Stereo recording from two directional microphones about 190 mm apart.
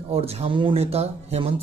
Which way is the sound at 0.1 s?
30° right (ahead or behind).